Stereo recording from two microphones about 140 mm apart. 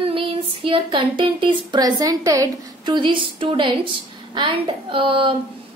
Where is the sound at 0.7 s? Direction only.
35° right (ahead or behind).